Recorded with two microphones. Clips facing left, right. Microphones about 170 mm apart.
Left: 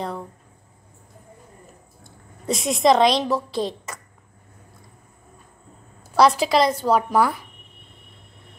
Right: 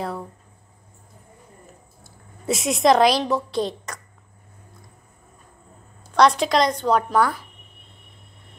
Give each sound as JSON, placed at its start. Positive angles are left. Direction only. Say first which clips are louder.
{"t": 2.0, "sound": "a woman's voice", "louder": "right 1 dB", "side_deg": -5}
{"t": 6.1, "sound": "a woman's voice", "louder": "left 1 dB", "side_deg": 5}